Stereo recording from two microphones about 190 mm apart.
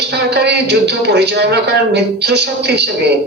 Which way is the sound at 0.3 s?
60° right (ahead or behind).